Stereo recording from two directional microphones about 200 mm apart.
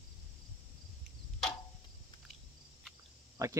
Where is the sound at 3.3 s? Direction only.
15° right (ahead or behind).